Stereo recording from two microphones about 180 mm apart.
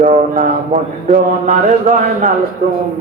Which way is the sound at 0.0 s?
45° right (ahead or behind).